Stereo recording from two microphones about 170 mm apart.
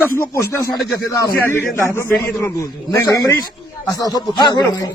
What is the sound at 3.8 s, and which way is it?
Speech, 20° left (ahead or behind).